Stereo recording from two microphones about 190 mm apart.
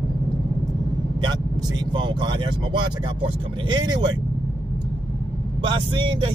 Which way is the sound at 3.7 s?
25° right (ahead or behind).